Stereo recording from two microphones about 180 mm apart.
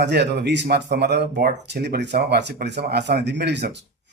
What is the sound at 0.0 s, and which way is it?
Speech, 70° right (ahead or behind).